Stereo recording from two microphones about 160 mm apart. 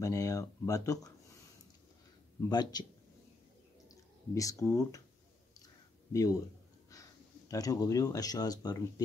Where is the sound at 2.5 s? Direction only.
25° left (ahead or behind).